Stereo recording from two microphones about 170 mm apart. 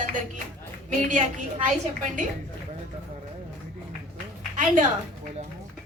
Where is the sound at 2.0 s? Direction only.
50° right (ahead or behind).